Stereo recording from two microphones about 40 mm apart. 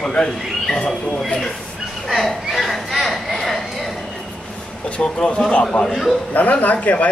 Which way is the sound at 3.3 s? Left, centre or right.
Centre.